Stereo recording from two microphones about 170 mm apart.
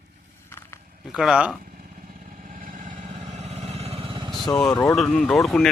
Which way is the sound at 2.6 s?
50° right (ahead or behind).